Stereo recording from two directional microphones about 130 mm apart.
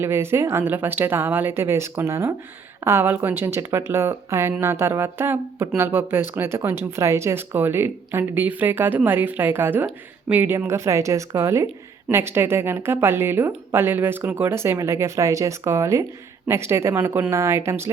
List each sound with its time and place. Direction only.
0.0 s speech: 20° right (ahead or behind)